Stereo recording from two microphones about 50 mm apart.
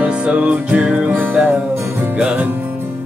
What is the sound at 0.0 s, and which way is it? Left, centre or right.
Music, right.